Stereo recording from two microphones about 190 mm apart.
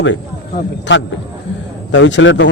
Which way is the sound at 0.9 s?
70° left (ahead or behind).